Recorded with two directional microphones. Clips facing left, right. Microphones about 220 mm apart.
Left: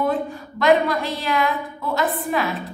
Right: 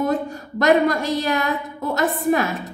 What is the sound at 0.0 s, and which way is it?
A woman's voice, 40° right (ahead or behind).